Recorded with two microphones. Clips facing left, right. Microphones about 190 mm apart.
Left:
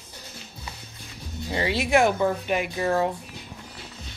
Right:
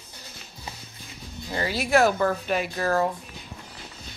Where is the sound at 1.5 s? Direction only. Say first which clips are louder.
Even; 25° left (ahead or behind).